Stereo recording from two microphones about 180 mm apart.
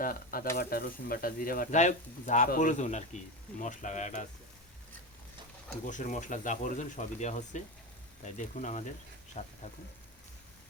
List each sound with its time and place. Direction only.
0.0 s speech: 55° left (ahead or behind)
5.8 s speech: 45° left (ahead or behind)